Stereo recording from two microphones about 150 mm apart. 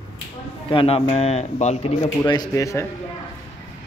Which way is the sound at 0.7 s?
35° left (ahead or behind).